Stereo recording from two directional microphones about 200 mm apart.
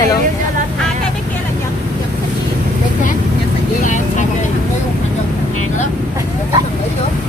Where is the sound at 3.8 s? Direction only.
40° left (ahead or behind).